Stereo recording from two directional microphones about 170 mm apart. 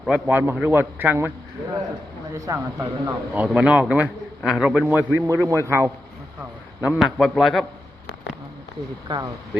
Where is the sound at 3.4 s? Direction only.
5° right (ahead or behind).